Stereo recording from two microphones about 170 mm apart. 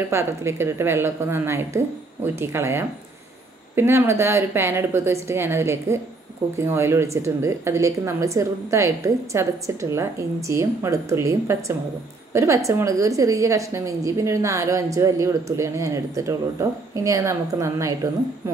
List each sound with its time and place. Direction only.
0.1 s a woman's voice: 15° right (ahead or behind)